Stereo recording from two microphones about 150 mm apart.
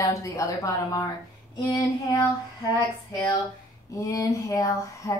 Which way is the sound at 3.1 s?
20° left (ahead or behind).